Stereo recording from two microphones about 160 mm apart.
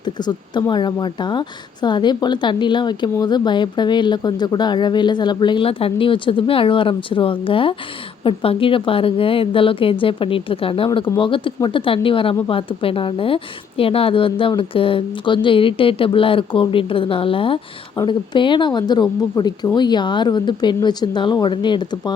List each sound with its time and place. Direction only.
0.0 s speech: 25° left (ahead or behind)